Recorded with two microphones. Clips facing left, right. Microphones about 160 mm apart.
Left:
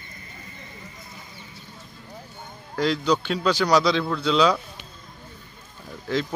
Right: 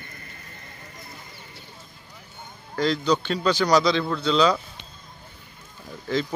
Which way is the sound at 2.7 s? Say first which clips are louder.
Even; 5° left (ahead or behind).